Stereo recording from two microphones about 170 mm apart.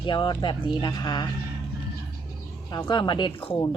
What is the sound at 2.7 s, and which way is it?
Speech, 25° left (ahead or behind).